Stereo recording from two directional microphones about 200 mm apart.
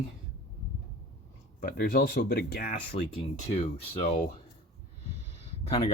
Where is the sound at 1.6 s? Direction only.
45° left (ahead or behind).